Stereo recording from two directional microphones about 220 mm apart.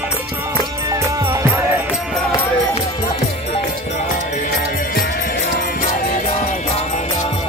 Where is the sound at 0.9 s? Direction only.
15° right (ahead or behind).